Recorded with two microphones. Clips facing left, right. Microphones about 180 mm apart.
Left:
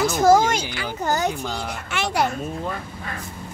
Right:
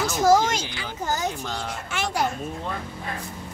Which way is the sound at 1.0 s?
65° left (ahead or behind).